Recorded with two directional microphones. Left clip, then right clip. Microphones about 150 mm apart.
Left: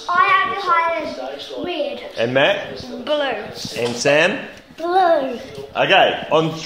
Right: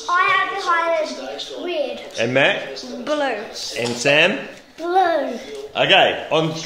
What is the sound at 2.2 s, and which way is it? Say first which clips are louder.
A woman's voice: left 1 dB; 25° right (ahead or behind).